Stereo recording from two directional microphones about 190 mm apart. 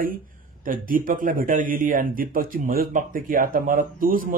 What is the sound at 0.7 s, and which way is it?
Speech, 45° right (ahead or behind).